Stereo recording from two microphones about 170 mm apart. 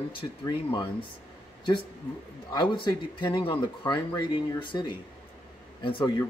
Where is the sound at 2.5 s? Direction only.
25° left (ahead or behind).